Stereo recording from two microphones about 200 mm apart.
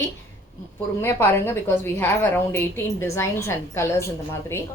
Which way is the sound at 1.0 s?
10° left (ahead or behind).